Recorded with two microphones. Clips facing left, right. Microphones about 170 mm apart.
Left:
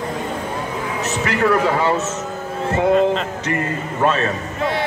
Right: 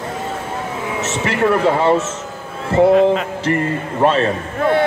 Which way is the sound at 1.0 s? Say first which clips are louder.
Right 2 dB; 25° right (ahead or behind).